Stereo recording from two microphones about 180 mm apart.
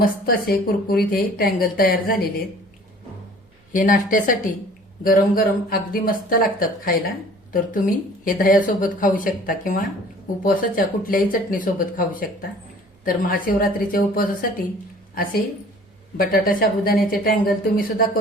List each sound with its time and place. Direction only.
0.0 s a woman's voice: 55° left (ahead or behind)
3.7 s a woman's voice: 50° left (ahead or behind)